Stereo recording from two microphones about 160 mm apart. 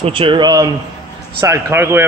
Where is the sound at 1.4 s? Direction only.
15° right (ahead or behind).